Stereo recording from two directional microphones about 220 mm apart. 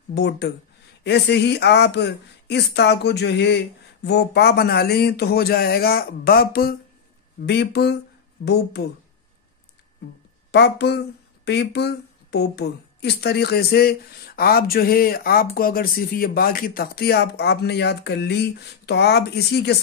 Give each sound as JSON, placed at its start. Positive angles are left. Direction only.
{"t": 0.1, "sound": "a woman's voice", "side_deg": 50}
{"t": 10.5, "sound": "a woman's voice", "side_deg": 50}